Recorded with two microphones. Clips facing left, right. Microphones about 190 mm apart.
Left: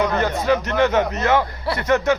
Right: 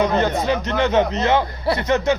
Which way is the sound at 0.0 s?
20° right (ahead or behind).